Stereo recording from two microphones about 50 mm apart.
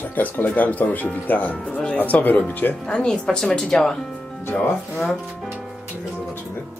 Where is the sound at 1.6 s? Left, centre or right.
Left.